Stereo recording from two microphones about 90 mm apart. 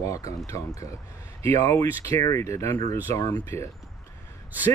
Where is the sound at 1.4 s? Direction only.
35° left (ahead or behind).